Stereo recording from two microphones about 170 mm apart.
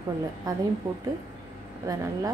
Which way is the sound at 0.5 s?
20° right (ahead or behind).